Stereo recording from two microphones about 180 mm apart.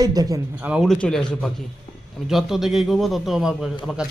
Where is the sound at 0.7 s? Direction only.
Centre (ahead or behind).